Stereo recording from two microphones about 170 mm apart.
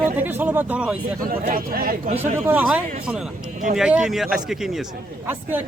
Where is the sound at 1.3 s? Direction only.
60° right (ahead or behind).